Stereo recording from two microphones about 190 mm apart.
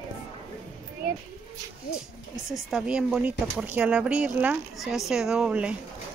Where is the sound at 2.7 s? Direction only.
5° right (ahead or behind).